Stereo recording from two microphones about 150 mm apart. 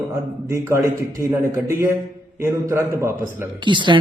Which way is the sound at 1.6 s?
15° right (ahead or behind).